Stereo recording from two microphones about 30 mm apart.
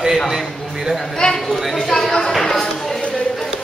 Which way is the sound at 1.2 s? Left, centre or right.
Left.